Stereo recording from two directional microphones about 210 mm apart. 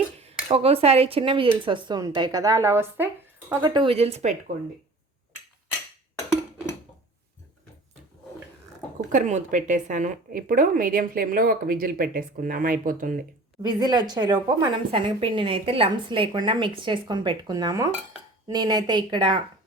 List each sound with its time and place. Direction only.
0.2 s a woman's voice: 30° right (ahead or behind)
9.1 s a woman's voice: 35° right (ahead or behind)
13.6 s a woman's voice: 20° right (ahead or behind)